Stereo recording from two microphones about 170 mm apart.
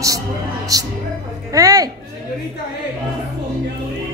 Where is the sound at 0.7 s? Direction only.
20° right (ahead or behind).